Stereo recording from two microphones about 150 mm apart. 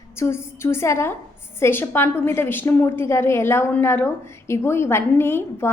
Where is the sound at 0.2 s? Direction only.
15° left (ahead or behind).